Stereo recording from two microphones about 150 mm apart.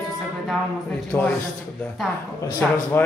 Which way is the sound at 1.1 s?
15° left (ahead or behind).